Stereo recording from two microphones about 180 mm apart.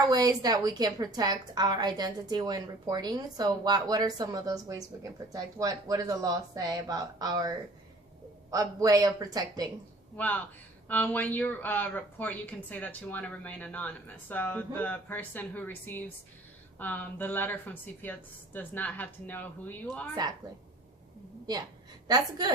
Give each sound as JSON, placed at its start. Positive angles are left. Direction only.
{"t": 0.1, "sound": "a woman's voice", "side_deg": -20}
{"t": 10.2, "sound": "speech", "side_deg": 10}
{"t": 22.0, "sound": "a woman's voice", "side_deg": -20}